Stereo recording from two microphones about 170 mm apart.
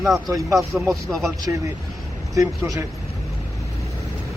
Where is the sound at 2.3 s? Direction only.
20° right (ahead or behind).